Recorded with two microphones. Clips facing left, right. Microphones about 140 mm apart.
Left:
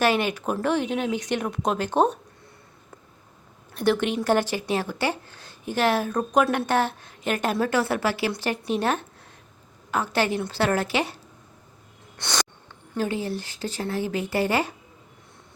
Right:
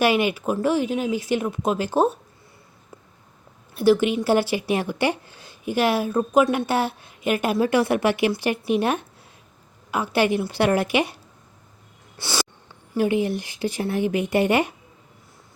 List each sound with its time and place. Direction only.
0.0 s speech: 10° right (ahead or behind)
3.8 s speech: 5° right (ahead or behind)
12.1 s a sound: 5° right (ahead or behind)
12.9 s speech: 15° right (ahead or behind)